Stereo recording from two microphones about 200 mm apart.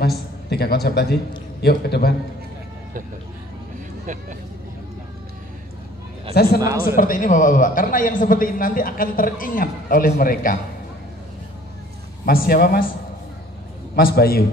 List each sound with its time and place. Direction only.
0.0 s a man's voice: 55° left (ahead or behind)
4.0 s speech: 40° right (ahead or behind)
6.3 s a man's voice: 50° left (ahead or behind)
6.6 s speech: 15° right (ahead or behind)
7.0 s a man's voice: 45° left (ahead or behind)
12.3 s a man's voice: 50° left (ahead or behind)
13.9 s a man's voice: 50° left (ahead or behind)